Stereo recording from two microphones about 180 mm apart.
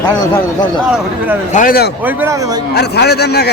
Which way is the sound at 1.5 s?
50° left (ahead or behind).